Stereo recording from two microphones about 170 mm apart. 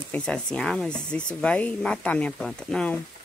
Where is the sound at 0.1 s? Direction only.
5° left (ahead or behind).